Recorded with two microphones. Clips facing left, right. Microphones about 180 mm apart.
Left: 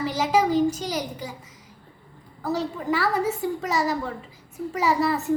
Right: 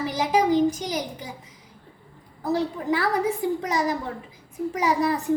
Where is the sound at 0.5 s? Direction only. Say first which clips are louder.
Right 1 dB; 15° right (ahead or behind).